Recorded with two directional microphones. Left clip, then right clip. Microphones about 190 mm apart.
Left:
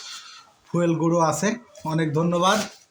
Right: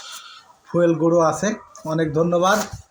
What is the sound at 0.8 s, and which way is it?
Speech, 40° left (ahead or behind).